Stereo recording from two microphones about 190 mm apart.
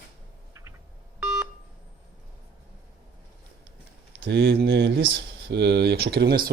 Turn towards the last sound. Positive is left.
turn(degrees=-55)  # may be behind; listen again after turning